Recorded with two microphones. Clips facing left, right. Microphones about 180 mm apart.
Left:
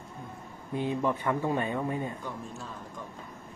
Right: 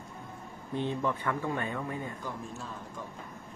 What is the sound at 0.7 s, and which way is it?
Speech, 10° left (ahead or behind).